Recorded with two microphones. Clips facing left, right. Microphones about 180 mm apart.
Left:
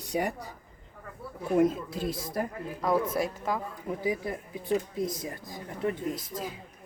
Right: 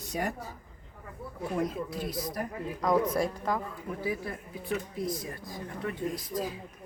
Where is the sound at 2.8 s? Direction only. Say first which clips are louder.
Right 1 dB; 5° left (ahead or behind).